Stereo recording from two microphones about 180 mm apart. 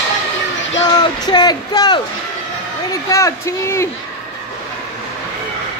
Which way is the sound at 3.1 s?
15° left (ahead or behind).